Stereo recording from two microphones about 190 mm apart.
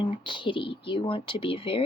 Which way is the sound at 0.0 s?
25° left (ahead or behind).